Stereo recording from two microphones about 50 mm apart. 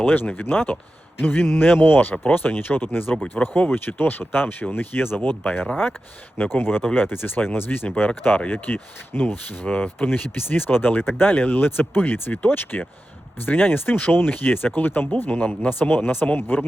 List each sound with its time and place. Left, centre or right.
0.0 s speech: left
9.6 s speech: left
10.1 s speech: left